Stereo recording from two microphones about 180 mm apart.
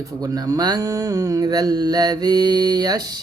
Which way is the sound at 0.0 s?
20° right (ahead or behind).